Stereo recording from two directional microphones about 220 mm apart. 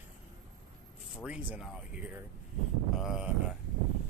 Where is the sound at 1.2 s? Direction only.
5° right (ahead or behind).